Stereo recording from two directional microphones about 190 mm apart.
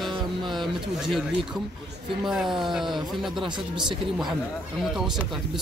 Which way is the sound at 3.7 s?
25° right (ahead or behind).